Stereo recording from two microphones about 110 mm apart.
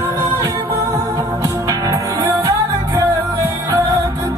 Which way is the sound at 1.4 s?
35° right (ahead or behind).